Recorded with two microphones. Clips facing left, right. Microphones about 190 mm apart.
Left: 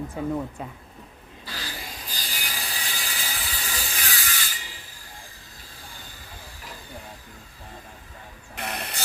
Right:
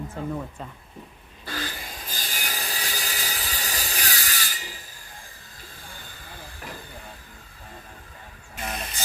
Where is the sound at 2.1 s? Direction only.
45° right (ahead or behind).